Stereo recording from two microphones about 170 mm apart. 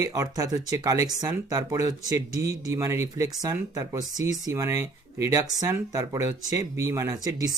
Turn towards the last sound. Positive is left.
turn(degrees=-20)  # may be behind; listen again after turning